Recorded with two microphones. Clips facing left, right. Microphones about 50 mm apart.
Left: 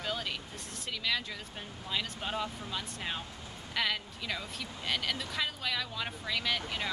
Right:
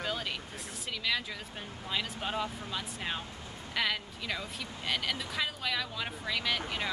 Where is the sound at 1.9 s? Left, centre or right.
Centre.